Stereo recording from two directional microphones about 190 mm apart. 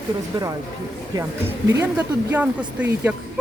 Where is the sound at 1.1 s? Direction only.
15° right (ahead or behind).